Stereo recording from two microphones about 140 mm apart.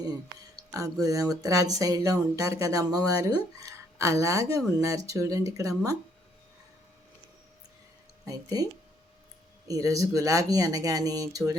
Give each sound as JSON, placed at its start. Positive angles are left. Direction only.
{"t": 0.0, "sound": "speech", "side_deg": -25}
{"t": 8.2, "sound": "speech", "side_deg": -25}
{"t": 9.6, "sound": "speech", "side_deg": -25}